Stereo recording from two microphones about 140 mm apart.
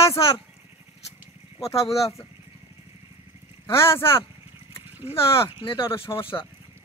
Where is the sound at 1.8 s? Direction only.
45° left (ahead or behind).